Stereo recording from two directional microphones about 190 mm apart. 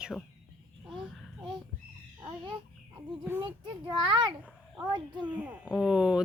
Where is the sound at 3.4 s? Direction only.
25° right (ahead or behind).